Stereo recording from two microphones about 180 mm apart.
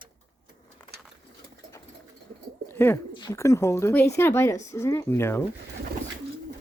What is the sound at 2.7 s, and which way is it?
Bird, 10° left (ahead or behind).